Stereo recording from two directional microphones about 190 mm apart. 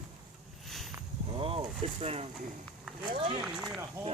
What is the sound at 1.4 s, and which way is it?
Speech, 30° right (ahead or behind).